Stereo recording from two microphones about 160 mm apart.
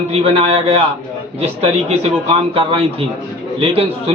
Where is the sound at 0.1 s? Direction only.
40° right (ahead or behind).